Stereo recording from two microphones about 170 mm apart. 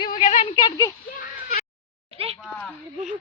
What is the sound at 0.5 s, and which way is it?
Speech, 20° left (ahead or behind).